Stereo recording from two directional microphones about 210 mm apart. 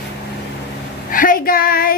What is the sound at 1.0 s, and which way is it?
Child singing, 40° left (ahead or behind).